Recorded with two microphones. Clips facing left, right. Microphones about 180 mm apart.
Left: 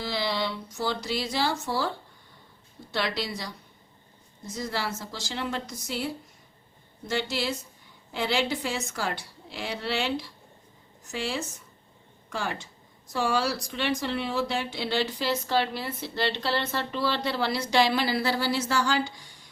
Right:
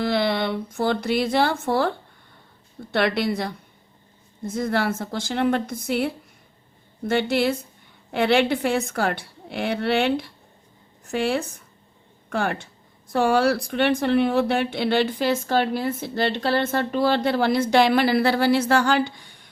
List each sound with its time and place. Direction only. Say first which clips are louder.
0.0 s speech: right 7 dB; 55° right (ahead or behind)
2.9 s speech: right 8 dB; 55° right (ahead or behind)